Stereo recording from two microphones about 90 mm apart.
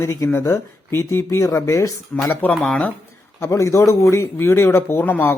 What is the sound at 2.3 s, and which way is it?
Speech, 20° left (ahead or behind).